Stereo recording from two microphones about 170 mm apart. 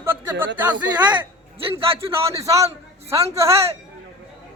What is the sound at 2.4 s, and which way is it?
A man's voice, 20° right (ahead or behind).